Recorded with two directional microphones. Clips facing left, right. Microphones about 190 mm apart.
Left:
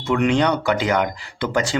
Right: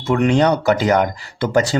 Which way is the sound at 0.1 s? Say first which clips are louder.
Right 3 dB; 40° right (ahead or behind).